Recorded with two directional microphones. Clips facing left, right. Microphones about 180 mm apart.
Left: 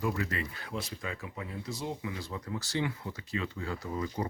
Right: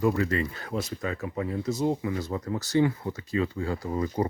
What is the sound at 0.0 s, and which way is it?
Speech, 40° right (ahead or behind).